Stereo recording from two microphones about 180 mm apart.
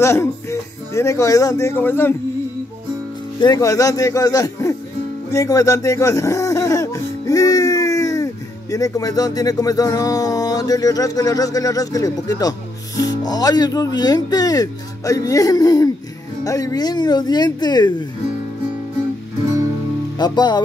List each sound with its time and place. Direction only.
0.0 s speech: 15° left (ahead or behind)
3.3 s speech: 20° left (ahead or behind)
20.2 s speech: 25° left (ahead or behind)